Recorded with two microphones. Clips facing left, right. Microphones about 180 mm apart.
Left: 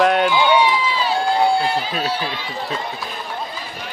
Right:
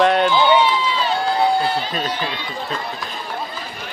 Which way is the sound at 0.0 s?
5° left (ahead or behind).